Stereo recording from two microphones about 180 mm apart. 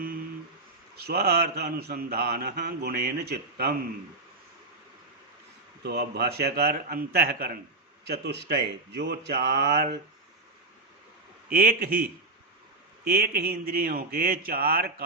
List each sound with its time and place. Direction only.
1.0 s mantra: 60° right (ahead or behind)
5.8 s mantra: 60° right (ahead or behind)
11.5 s a man's voice: 55° right (ahead or behind)
13.1 s mantra: 55° right (ahead or behind)